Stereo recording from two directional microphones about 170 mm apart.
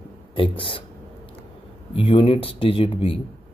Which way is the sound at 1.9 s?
30° left (ahead or behind).